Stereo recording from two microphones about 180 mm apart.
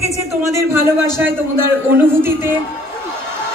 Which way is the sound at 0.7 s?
15° right (ahead or behind).